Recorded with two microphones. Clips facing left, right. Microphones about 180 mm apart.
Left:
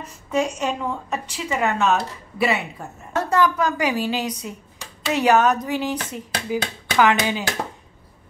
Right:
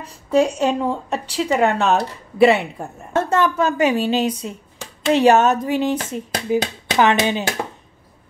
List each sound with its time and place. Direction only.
0.0 s a woman's voice: 35° right (ahead or behind)